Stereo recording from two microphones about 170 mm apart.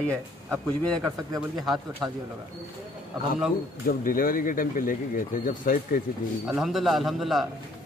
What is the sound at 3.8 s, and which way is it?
Speech, 55° left (ahead or behind).